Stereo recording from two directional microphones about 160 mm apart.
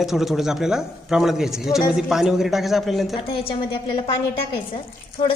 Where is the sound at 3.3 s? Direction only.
35° left (ahead or behind).